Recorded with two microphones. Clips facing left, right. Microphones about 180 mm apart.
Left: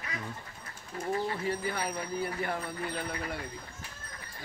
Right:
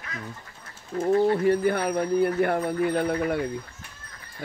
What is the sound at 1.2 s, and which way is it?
Speech, 55° right (ahead or behind).